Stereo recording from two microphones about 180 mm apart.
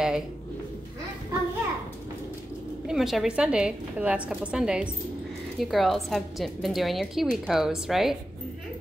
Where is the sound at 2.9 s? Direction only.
Centre (ahead or behind).